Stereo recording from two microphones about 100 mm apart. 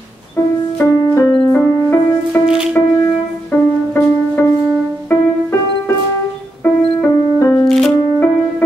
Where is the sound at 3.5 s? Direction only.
20° left (ahead or behind).